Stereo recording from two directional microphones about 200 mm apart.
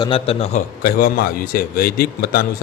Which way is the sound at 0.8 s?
50° left (ahead or behind).